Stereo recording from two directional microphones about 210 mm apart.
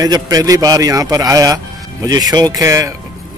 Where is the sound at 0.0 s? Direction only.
15° right (ahead or behind).